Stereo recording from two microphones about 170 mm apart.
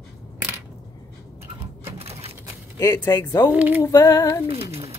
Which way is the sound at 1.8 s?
35° right (ahead or behind).